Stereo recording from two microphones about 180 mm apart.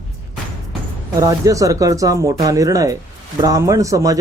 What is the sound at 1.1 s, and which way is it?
Speech, 20° right (ahead or behind).